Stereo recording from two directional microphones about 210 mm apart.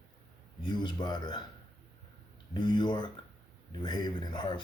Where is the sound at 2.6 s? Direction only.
20° left (ahead or behind).